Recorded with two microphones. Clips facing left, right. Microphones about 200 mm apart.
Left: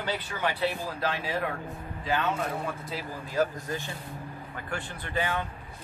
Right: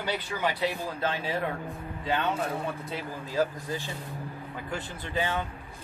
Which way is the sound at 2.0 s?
25° right (ahead or behind).